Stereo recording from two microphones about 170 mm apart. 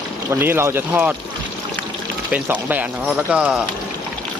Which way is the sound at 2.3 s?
10° right (ahead or behind).